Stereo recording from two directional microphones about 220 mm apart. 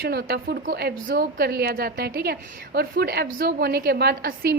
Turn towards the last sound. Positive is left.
turn(degrees=-45)  # may be behind; listen again after turning